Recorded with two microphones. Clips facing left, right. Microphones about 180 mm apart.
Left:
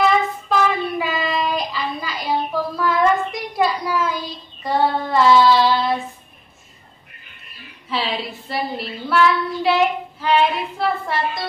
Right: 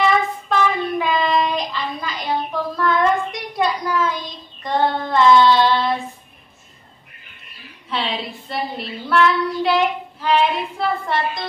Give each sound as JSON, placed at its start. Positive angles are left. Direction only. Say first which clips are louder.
{"t": 0.0, "sound": "child singing", "louder": "left 1 dB", "side_deg": 5}
{"t": 7.9, "sound": "child singing", "louder": "left 1 dB", "side_deg": 0}